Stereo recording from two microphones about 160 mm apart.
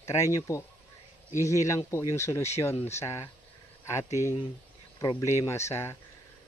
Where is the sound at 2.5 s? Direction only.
15° left (ahead or behind).